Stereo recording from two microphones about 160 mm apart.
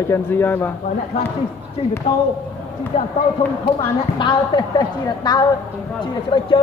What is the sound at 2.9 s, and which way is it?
Speech, 45° left (ahead or behind).